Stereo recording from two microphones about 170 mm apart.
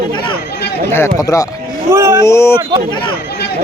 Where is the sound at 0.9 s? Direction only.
15° left (ahead or behind).